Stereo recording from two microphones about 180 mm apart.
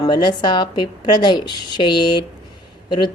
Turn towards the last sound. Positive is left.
turn(degrees=25)  # may be behind; listen again after turning